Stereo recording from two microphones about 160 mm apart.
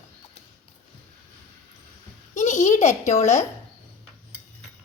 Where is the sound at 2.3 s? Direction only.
50° left (ahead or behind).